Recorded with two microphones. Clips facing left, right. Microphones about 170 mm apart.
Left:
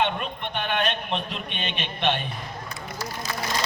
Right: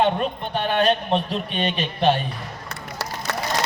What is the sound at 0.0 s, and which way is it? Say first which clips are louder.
A man's voice: right 5 dB; 35° right (ahead or behind).